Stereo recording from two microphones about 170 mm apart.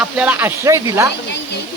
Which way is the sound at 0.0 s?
5° right (ahead or behind).